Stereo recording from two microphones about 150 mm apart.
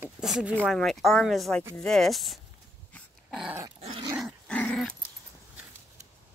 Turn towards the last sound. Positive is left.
turn(degrees=5)  # may be behind; listen again after turning